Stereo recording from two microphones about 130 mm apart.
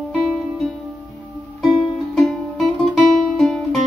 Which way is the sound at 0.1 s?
Centre (ahead or behind).